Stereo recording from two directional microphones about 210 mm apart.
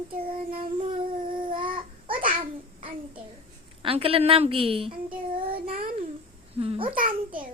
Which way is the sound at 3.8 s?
25° right (ahead or behind).